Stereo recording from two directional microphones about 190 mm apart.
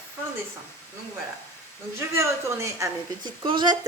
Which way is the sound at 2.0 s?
15° right (ahead or behind).